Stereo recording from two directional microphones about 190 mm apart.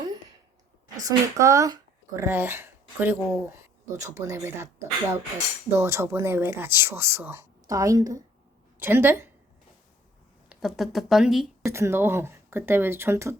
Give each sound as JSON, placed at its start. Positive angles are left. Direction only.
{"t": 0.9, "sound": "speech", "side_deg": -20}
{"t": 10.5, "sound": "speech", "side_deg": 0}
{"t": 11.6, "sound": "speech", "side_deg": -15}